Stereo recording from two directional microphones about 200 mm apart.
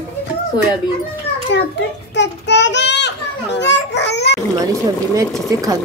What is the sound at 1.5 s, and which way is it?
Speech, 65° left (ahead or behind).